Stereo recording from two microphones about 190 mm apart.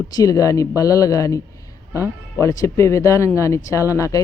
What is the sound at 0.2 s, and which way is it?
Speech, 15° left (ahead or behind).